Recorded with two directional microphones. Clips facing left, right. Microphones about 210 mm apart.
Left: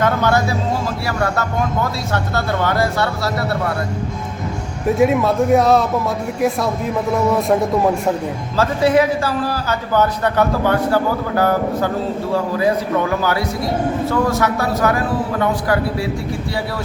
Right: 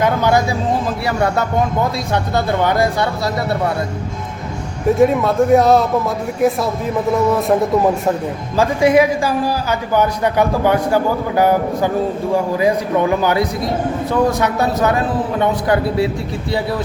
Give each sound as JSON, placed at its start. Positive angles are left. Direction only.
{"t": 0.0, "sound": "a sound", "side_deg": -10}
{"t": 1.0, "sound": "a man's voice", "side_deg": -20}
{"t": 4.9, "sound": "a man's voice", "side_deg": 0}
{"t": 7.3, "sound": "a man's voice", "side_deg": 0}
{"t": 8.5, "sound": "a man's voice", "side_deg": -10}